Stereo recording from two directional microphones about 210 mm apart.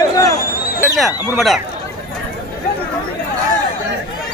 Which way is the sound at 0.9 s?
Centre (ahead or behind).